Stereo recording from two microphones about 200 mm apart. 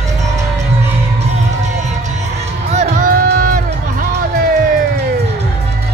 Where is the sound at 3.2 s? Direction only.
45° right (ahead or behind).